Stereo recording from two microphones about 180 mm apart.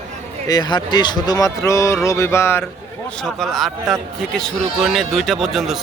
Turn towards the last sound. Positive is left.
turn(degrees=0)  # may be behind; listen again after turning